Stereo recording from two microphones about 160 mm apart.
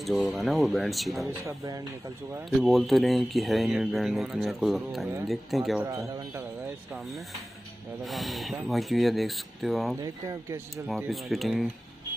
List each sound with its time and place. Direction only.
0.0 s speech: centre (ahead or behind)
1.4 s speech: 20° right (ahead or behind)
2.6 s speech: centre (ahead or behind)
5.8 s speech: 15° right (ahead or behind)
8.0 s speech: centre (ahead or behind)
10.0 s speech: 20° right (ahead or behind)
11.1 s speech: centre (ahead or behind)